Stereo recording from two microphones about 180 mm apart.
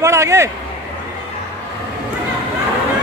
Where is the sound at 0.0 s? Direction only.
15° right (ahead or behind).